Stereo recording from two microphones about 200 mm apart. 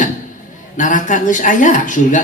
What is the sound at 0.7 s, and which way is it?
A man's voice, 40° left (ahead or behind).